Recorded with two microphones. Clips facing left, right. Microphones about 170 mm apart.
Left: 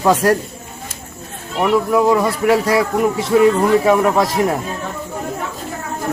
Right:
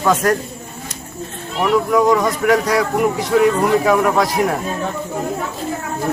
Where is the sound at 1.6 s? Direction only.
5° left (ahead or behind).